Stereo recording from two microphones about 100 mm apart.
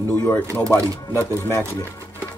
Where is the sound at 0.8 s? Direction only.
30° right (ahead or behind).